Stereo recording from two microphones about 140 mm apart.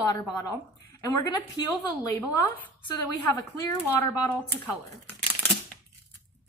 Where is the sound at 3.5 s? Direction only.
25° left (ahead or behind).